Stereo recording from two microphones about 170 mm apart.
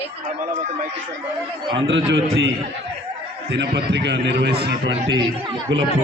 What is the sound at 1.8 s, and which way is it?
A man's voice, 90° right.